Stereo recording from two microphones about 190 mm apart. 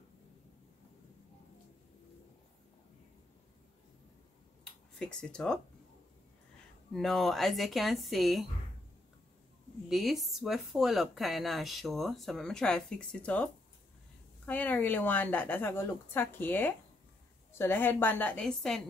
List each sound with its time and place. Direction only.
4.9 s speech: 5° left (ahead or behind)
6.9 s speech: centre (ahead or behind)
9.8 s a woman's voice: centre (ahead or behind)